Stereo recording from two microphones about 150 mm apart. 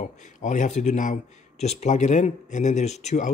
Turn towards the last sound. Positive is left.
turn(degrees=50)  # may be behind; listen again after turning